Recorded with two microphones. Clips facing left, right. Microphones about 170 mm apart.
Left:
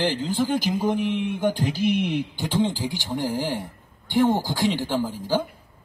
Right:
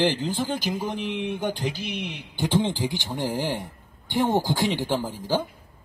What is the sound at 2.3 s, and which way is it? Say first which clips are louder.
Speech: even; 20° right (ahead or behind).